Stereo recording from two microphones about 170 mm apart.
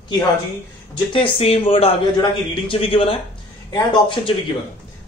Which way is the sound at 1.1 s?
35° left (ahead or behind).